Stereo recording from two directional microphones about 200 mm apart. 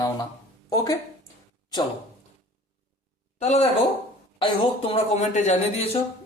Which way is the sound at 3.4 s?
35° left (ahead or behind).